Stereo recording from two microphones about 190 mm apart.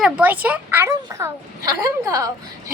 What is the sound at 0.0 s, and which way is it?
A woman's voice, 10° right (ahead or behind).